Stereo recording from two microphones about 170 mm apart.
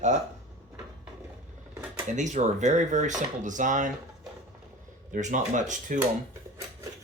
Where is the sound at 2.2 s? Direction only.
45° right (ahead or behind).